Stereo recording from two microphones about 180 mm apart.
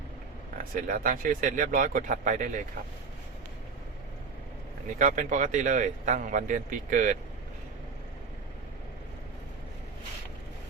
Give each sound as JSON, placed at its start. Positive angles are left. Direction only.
{"t": 0.7, "sound": "speech", "side_deg": -50}
{"t": 4.9, "sound": "speech", "side_deg": -45}